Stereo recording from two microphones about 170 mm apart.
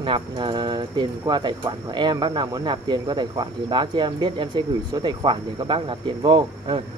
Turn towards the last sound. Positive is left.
turn(degrees=-30)  # may be behind; listen again after turning